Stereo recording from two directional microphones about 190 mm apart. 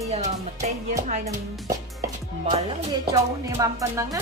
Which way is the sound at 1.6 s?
20° right (ahead or behind).